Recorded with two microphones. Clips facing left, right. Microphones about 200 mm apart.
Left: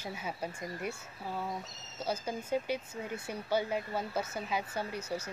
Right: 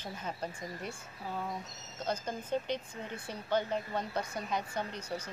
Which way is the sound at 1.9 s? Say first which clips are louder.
Left 1 dB; 10° left (ahead or behind).